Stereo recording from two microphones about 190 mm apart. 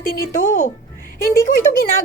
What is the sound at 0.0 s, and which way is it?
A woman's voice, 50° left (ahead or behind).